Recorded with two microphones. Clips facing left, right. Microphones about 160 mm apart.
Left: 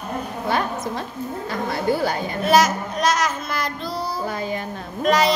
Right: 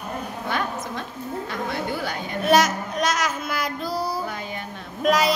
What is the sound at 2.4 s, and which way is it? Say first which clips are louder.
Speech: left 1 dB; centre (ahead or behind).